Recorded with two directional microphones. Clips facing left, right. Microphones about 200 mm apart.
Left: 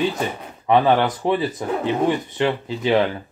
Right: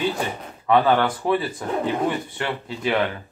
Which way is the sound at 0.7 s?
20° left (ahead or behind).